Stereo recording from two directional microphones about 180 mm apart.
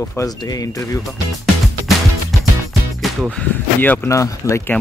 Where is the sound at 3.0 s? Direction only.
Centre (ahead or behind); by 4.7 s 15° left (ahead or behind).